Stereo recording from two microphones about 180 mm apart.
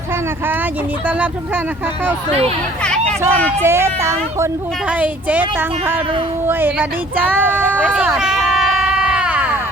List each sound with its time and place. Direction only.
3.1 s speech: 10° left (ahead or behind)
3.6 s speech: 15° right (ahead or behind)
7.9 s a sound: 5° right (ahead or behind)